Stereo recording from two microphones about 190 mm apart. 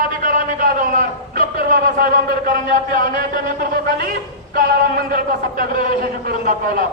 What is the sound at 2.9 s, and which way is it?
A man's voice, 45° right (ahead or behind).